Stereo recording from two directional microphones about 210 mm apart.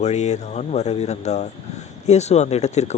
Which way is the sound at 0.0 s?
30° left (ahead or behind).